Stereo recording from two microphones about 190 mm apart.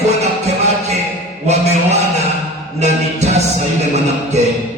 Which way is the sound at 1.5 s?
35° right (ahead or behind).